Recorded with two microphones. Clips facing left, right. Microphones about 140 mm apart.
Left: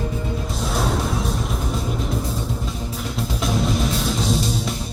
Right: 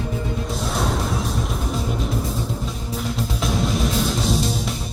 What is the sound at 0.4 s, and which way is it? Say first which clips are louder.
Music: left 1 dB; centre (ahead or behind).